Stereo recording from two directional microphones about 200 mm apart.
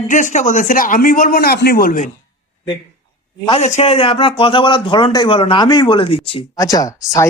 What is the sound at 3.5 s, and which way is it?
A man's voice, 35° left (ahead or behind).